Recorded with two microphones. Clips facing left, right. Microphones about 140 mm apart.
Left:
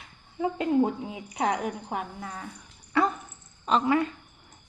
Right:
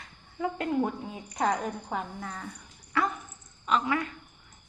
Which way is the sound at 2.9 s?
25° left (ahead or behind).